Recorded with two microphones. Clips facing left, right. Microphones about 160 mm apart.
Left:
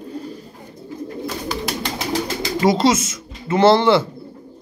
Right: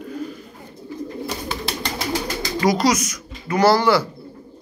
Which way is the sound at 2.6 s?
25° left (ahead or behind).